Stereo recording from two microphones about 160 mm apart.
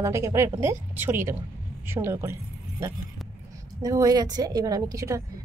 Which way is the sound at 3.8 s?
25° right (ahead or behind).